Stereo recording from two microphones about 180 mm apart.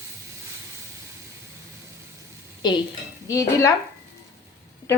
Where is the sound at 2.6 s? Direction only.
25° left (ahead or behind).